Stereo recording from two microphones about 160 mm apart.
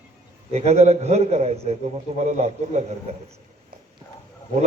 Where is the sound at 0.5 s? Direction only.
40° right (ahead or behind).